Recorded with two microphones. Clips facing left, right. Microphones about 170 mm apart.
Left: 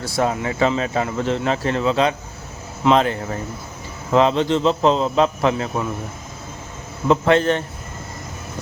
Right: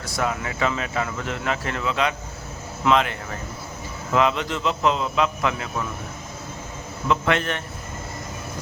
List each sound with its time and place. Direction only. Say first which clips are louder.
0.0 s speech: left 5 dB; 30° left (ahead or behind)
7.1 s speech: left 7 dB; 30° left (ahead or behind)